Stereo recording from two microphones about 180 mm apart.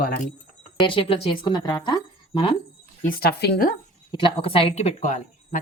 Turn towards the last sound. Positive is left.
turn(degrees=40)  # may be behind; listen again after turning